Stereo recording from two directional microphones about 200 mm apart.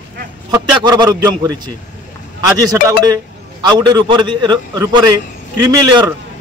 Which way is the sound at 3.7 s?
20° right (ahead or behind).